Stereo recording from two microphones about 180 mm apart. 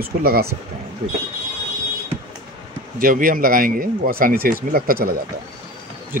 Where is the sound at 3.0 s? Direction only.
50° right (ahead or behind).